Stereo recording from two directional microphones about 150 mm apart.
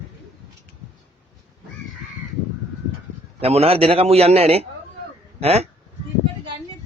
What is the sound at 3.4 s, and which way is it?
A man's voice, 40° right (ahead or behind).